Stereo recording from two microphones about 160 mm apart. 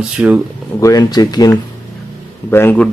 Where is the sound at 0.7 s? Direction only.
20° left (ahead or behind).